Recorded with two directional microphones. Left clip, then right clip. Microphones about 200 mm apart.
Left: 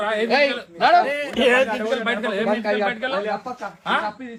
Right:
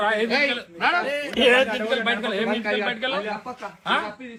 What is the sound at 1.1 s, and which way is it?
Speech, 20° left (ahead or behind).